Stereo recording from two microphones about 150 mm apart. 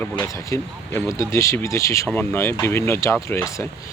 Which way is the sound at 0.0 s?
15° left (ahead or behind).